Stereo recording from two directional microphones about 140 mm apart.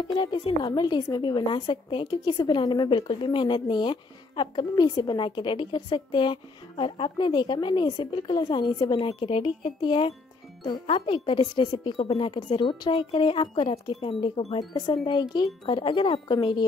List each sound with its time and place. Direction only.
0.1 s a woman's voice: 35° left (ahead or behind)
14.6 s a woman's voice: 30° left (ahead or behind)